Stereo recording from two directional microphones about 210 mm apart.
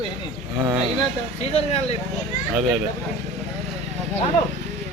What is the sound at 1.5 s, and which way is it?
Speech, 30° left (ahead or behind).